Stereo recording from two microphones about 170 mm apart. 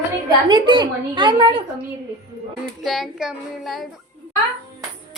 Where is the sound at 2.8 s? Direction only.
Centre (ahead or behind).